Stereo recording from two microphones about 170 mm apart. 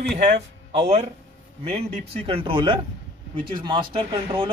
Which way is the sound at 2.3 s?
35° right (ahead or behind).